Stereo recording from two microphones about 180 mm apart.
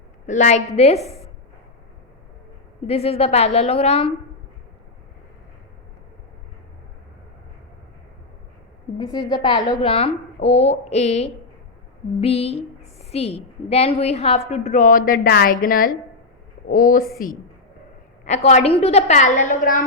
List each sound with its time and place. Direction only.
0.3 s a woman's voice: 45° left (ahead or behind)
2.8 s a woman's voice: 35° left (ahead or behind)
9.0 s a woman's voice: 20° left (ahead or behind); by 17.3 s 50° left (ahead or behind)
18.3 s a woman's voice: 40° left (ahead or behind)